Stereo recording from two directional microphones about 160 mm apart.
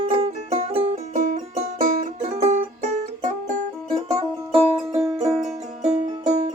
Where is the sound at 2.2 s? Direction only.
40° right (ahead or behind).